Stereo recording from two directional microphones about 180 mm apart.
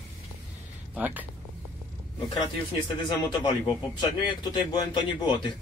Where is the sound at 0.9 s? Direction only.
10° right (ahead or behind).